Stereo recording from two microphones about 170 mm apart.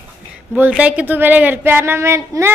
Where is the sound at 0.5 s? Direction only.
10° right (ahead or behind).